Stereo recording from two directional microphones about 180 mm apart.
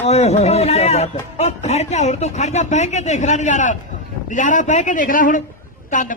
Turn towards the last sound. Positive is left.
turn(degrees=45)  # may be behind; listen again after turning